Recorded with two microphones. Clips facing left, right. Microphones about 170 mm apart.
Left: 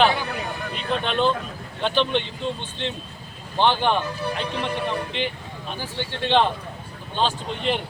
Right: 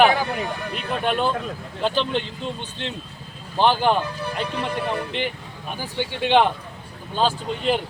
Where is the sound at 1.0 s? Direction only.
10° right (ahead or behind).